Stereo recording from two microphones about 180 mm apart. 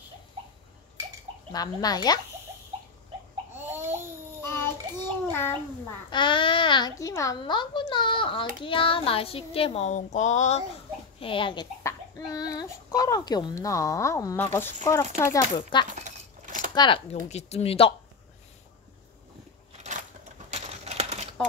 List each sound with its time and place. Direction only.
1.5 s a child's voice: 20° left (ahead or behind)
4.4 s child singing: 15° left (ahead or behind)
6.0 s a child's voice: 25° left (ahead or behind)
11.1 s a child's voice: 30° left (ahead or behind)
15.9 s a sound: 45° right (ahead or behind)
16.7 s speech: 25° left (ahead or behind)
20.4 s a sound: 35° right (ahead or behind)